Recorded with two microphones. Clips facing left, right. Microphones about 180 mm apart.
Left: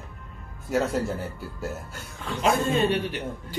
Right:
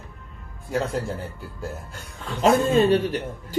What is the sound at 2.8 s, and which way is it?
Speech, 40° right (ahead or behind).